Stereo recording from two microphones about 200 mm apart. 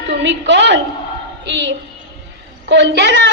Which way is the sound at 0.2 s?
60° right (ahead or behind).